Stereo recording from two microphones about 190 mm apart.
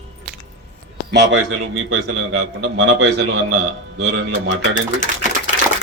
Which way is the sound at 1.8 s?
70° right (ahead or behind).